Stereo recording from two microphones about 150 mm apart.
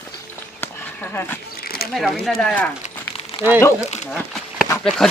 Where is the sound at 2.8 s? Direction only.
45° left (ahead or behind).